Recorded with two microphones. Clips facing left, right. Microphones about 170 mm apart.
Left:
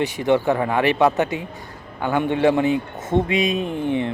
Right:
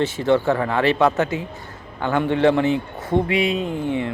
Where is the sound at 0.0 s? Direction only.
15° left (ahead or behind).